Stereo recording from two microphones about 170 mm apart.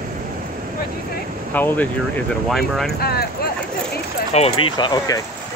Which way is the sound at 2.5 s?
Centre (ahead or behind).